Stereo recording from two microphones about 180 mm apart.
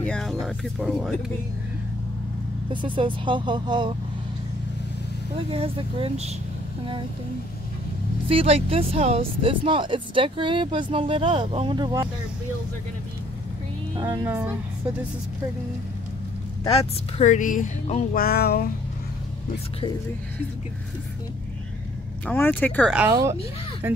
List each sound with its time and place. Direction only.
0.0 s speech: 5° left (ahead or behind)
2.7 s speech: 25° right (ahead or behind)
5.5 s speech: 30° right (ahead or behind)
8.3 s speech: 30° right (ahead or behind)
14.0 s a woman's voice: 10° right (ahead or behind)
17.2 s speech: 45° left (ahead or behind)
18.1 s a sound: 60° left (ahead or behind)
22.2 s speech: 10° left (ahead or behind)